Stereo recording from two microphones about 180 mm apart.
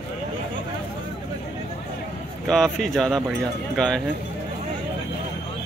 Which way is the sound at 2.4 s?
Centre (ahead or behind).